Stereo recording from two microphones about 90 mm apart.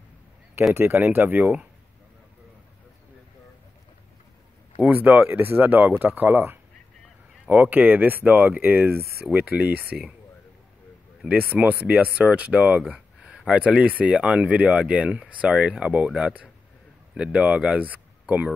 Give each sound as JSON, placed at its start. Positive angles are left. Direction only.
{"t": 0.7, "sound": "speech", "side_deg": -20}
{"t": 4.7, "sound": "speech", "side_deg": -20}
{"t": 9.2, "sound": "speech", "side_deg": -10}
{"t": 11.2, "sound": "speech", "side_deg": -15}
{"t": 12.8, "sound": "a sound", "side_deg": -10}
{"t": 13.5, "sound": "speech", "side_deg": -10}